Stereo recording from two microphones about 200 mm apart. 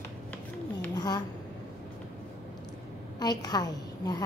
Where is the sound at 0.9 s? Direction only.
20° left (ahead or behind).